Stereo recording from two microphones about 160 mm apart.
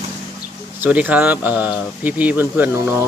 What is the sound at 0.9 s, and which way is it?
Speech, 10° right (ahead or behind).